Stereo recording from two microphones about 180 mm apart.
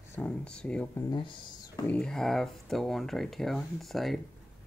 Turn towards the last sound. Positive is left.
turn(degrees=0)  # may be behind; listen again after turning